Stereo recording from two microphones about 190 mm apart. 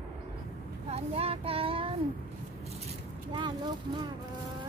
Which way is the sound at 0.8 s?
30° right (ahead or behind).